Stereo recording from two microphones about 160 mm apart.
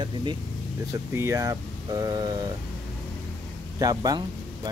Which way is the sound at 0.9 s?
20° right (ahead or behind).